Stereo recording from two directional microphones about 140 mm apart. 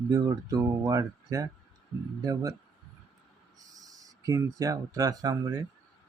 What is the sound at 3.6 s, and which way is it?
Speech, 25° right (ahead or behind).